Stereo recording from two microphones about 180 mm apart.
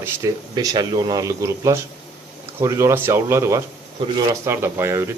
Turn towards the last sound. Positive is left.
turn(degrees=-15)  # may be behind; listen again after turning